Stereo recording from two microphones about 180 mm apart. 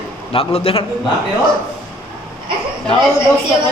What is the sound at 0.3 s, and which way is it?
Speech, 30° left (ahead or behind).